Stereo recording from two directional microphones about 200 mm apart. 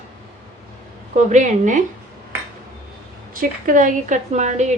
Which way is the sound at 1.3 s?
40° right (ahead or behind).